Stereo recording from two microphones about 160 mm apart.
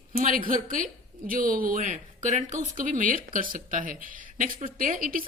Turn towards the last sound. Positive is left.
turn(degrees=-60)  # may be behind; listen again after turning